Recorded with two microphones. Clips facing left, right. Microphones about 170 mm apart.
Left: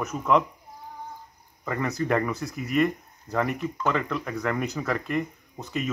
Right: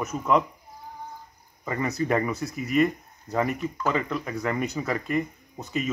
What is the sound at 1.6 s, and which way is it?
Speech, 10° right (ahead or behind).